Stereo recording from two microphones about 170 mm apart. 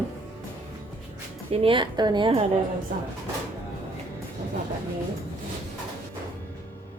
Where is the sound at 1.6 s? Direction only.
30° right (ahead or behind).